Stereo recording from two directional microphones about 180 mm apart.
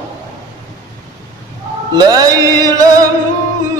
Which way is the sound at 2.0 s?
20° right (ahead or behind).